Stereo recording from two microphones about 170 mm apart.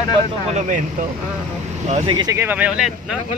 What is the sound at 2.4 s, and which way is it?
Speech, 10° right (ahead or behind).